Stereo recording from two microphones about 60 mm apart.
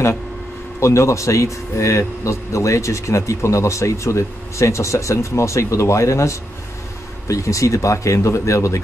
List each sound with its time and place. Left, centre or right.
0.7 s speech: left